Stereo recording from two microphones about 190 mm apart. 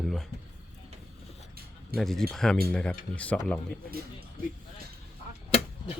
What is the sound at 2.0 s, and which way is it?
Speech, centre (ahead or behind).